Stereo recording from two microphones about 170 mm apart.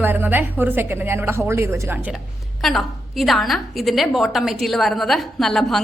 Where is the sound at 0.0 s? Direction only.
10° right (ahead or behind).